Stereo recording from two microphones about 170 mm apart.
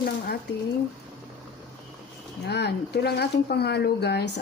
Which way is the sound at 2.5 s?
75° left (ahead or behind).